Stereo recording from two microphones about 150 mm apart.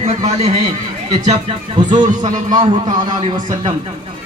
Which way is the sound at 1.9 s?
30° right (ahead or behind).